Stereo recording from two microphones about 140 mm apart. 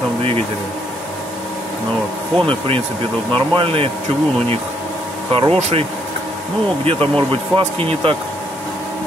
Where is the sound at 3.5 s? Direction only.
40° right (ahead or behind).